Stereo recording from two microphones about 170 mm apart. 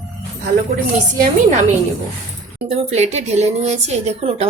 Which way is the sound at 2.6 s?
40° right (ahead or behind).